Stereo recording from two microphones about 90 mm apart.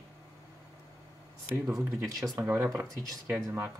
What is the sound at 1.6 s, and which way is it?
Speech, 35° right (ahead or behind).